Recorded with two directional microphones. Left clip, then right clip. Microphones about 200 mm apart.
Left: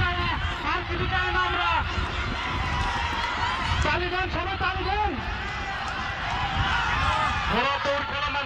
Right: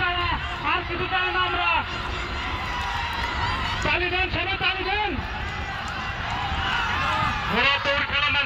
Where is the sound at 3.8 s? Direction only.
40° left (ahead or behind).